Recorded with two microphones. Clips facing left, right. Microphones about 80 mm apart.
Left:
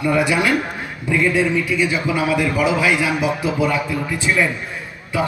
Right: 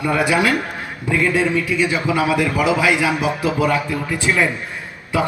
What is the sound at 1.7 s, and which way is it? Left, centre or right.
A man's voice, centre.